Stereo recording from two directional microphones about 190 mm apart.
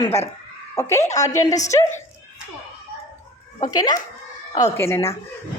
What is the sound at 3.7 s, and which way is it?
A woman's voice, 20° left (ahead or behind).